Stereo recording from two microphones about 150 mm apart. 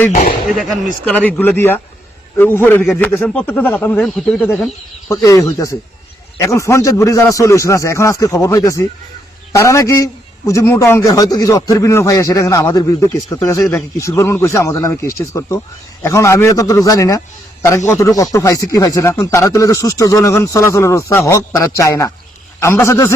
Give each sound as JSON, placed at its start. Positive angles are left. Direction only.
{"t": 0.5, "sound": "speech", "side_deg": 0}
{"t": 1.1, "sound": "speech", "side_deg": 10}
{"t": 5.0, "sound": "a man's voice", "side_deg": 20}